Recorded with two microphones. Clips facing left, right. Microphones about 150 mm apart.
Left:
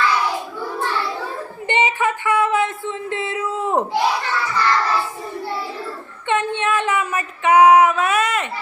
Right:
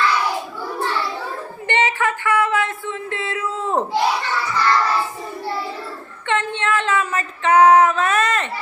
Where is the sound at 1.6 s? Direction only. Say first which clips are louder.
Left 1 dB; 15° left (ahead or behind).